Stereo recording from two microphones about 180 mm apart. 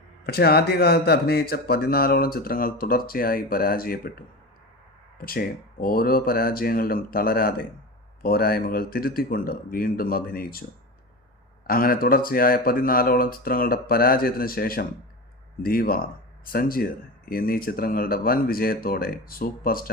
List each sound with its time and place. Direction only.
0.3 s speech: 60° left (ahead or behind)
11.6 s speech: 55° left (ahead or behind)